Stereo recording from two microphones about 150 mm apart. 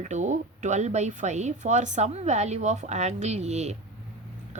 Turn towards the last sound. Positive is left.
turn(degrees=-50)  # may be behind; listen again after turning